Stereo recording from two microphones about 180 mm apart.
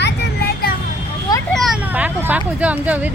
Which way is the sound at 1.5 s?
Centre (ahead or behind).